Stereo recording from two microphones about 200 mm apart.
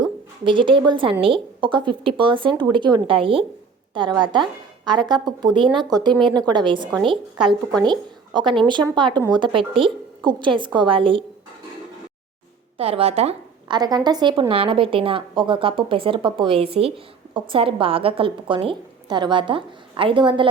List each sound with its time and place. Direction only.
0.0 s a woman's voice: 25° right (ahead or behind)
12.7 s a woman's voice: 30° right (ahead or behind)